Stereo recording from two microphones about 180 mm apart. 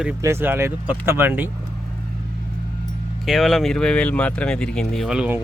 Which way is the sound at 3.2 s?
Centre (ahead or behind).